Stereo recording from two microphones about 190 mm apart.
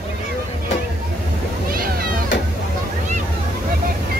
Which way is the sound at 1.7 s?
50° right (ahead or behind).